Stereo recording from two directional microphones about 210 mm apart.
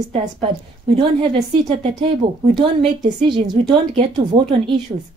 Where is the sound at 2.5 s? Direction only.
20° right (ahead or behind).